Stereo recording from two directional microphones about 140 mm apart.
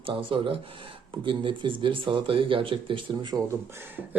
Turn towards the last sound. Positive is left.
turn(degrees=-15)  # may be behind; listen again after turning